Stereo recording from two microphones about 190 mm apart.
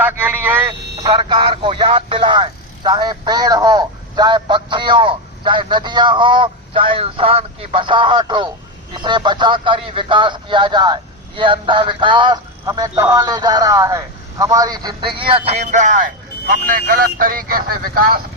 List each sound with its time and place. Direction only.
0.0 s speech: 10° right (ahead or behind)
0.9 s speech: 20° right (ahead or behind); by 18.2 s 50° right (ahead or behind)